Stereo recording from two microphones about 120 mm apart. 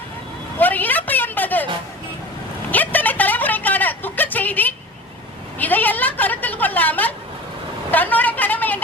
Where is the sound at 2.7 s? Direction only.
15° left (ahead or behind).